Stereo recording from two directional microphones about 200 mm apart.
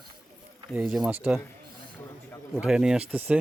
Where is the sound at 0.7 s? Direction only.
Centre (ahead or behind).